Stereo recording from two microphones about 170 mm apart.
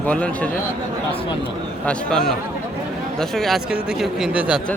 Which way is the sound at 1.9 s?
5° left (ahead or behind).